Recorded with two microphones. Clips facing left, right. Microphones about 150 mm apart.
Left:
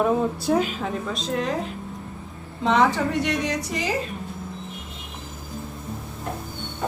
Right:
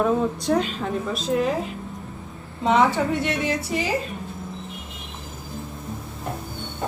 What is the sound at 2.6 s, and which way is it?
A woman's voice, 5° right (ahead or behind).